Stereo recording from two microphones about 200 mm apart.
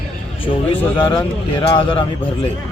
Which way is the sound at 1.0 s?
25° left (ahead or behind).